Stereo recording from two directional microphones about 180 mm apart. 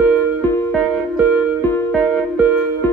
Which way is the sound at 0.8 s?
5° right (ahead or behind).